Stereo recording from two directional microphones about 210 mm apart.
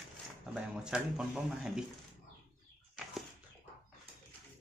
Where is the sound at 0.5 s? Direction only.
5° right (ahead or behind).